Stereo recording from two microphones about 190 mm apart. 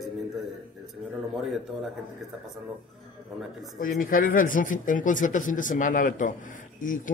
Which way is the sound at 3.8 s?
45° left (ahead or behind).